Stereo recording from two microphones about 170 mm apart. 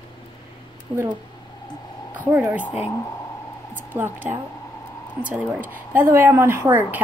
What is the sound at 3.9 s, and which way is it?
Speech, 10° right (ahead or behind).